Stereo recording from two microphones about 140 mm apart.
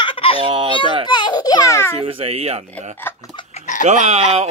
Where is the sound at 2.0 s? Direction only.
45° right (ahead or behind).